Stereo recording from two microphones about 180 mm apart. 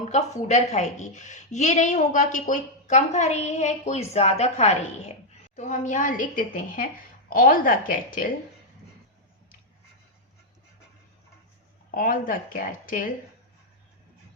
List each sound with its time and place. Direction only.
0.1 s a woman's voice: 40° left (ahead or behind)
11.9 s a woman's voice: 50° left (ahead or behind)